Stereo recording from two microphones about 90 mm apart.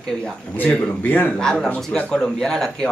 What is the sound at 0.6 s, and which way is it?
Speech, 15° left (ahead or behind).